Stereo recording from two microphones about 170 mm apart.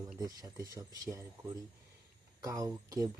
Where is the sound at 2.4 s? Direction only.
20° right (ahead or behind).